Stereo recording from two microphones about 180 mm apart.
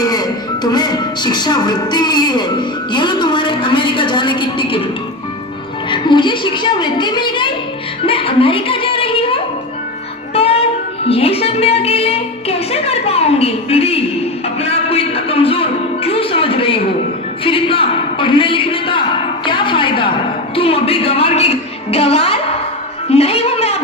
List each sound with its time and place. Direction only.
0.0 s music: 20° left (ahead or behind)
5.9 s a woman's voice: 25° left (ahead or behind)
8.0 s a sound: 30° left (ahead or behind)
10.3 s music: 35° left (ahead or behind)
14.6 s a sound: 35° left (ahead or behind)
20.6 s music: 30° left (ahead or behind)